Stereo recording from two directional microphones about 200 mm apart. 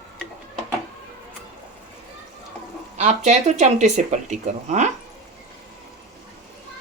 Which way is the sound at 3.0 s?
35° right (ahead or behind).